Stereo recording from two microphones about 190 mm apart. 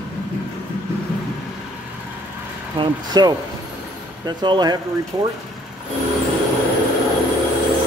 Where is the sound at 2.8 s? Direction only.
20° right (ahead or behind).